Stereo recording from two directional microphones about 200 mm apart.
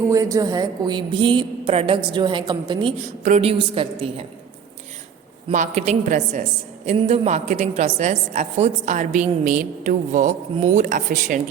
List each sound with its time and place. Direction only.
0.1 s a woman's voice: 15° right (ahead or behind)
5.5 s a woman's voice: 35° right (ahead or behind)